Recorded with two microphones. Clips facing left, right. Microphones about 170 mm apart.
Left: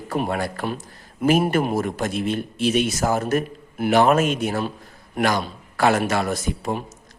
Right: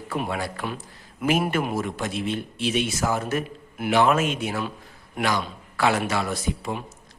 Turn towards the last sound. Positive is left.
turn(degrees=45)  # may be behind; listen again after turning